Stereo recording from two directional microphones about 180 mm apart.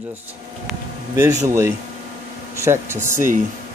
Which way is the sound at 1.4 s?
15° right (ahead or behind).